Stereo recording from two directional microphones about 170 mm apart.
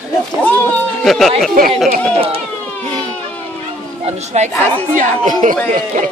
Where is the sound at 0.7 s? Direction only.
Centre (ahead or behind).